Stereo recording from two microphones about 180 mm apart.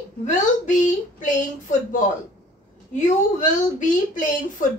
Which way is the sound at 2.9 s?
45° left (ahead or behind).